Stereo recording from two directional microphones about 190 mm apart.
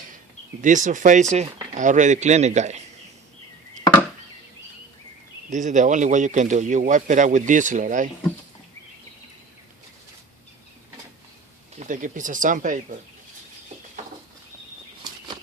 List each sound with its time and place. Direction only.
0.6 s speech: 40° right (ahead or behind)
5.5 s speech: 40° right (ahead or behind)
11.8 s speech: 45° right (ahead or behind)